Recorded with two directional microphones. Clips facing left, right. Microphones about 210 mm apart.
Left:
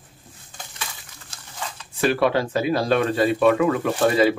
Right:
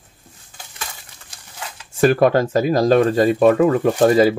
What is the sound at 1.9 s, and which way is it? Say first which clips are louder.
Speech: right 6 dB; 45° right (ahead or behind).